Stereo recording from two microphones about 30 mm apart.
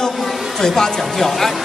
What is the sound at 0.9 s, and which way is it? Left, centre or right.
Speech, centre.